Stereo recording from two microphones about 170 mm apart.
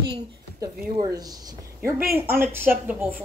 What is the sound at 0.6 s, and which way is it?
A woman's voice, 20° right (ahead or behind).